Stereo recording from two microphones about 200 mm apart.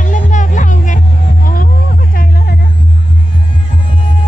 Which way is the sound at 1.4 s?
45° left (ahead or behind).